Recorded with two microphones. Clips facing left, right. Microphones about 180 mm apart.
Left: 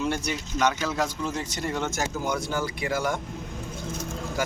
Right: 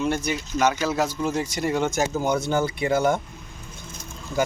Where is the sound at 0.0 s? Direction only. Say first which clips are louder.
Right 3 dB; centre (ahead or behind); by 3.2 s 25° right (ahead or behind).